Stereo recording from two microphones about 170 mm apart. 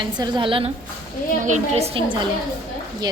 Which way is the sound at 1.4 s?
40° right (ahead or behind).